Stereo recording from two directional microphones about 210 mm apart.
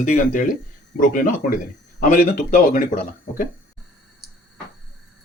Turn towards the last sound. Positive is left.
turn(degrees=40)  # may be behind; listen again after turning